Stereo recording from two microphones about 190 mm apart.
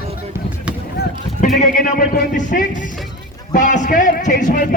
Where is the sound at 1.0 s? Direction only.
60° left (ahead or behind).